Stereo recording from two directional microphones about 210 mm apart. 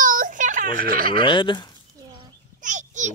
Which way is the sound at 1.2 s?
20° left (ahead or behind).